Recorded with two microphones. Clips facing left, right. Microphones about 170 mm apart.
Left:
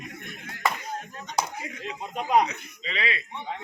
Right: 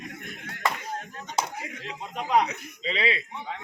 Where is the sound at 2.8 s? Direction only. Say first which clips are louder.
Right 4 dB; 30° right (ahead or behind).